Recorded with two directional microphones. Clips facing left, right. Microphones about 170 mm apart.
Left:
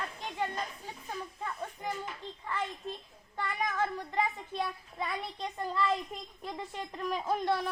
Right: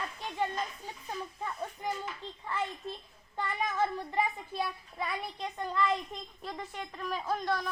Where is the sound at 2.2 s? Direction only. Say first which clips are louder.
Right 1 dB; 15° right (ahead or behind).